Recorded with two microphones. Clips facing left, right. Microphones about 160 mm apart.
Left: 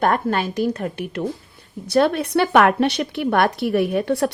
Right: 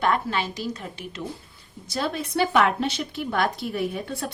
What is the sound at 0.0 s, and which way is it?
A woman's voice, 50° left (ahead or behind).